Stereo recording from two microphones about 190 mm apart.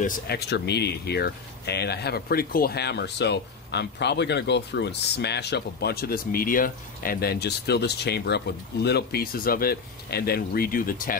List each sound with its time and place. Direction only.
0.0 s speech: 55° left (ahead or behind)